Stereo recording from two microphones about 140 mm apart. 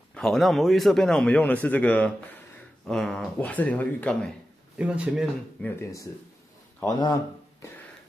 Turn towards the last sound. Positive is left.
turn(degrees=25)  # may be behind; listen again after turning